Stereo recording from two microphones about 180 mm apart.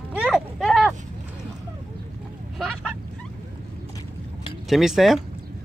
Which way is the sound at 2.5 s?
5° left (ahead or behind).